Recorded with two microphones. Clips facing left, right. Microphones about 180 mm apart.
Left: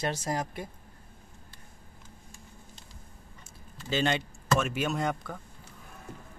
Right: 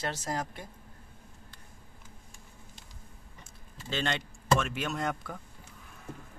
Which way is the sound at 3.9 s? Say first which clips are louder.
Left 5 dB; 5° left (ahead or behind).